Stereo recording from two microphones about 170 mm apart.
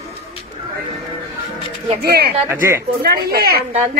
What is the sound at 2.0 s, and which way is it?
A woman's voice, 70° right (ahead or behind).